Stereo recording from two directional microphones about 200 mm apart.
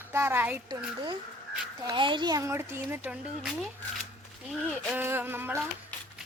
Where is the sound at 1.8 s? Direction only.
25° right (ahead or behind).